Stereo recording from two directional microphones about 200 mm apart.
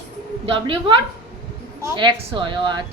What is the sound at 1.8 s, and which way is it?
A child's voice, 25° right (ahead or behind).